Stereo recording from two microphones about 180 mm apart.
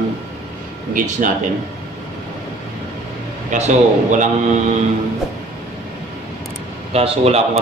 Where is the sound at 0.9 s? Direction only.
45° right (ahead or behind).